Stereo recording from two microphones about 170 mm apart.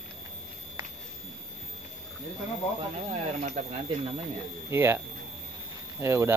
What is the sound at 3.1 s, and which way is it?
Speech, 40° right (ahead or behind).